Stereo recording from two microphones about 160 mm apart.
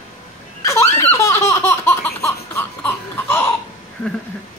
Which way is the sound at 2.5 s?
15° left (ahead or behind).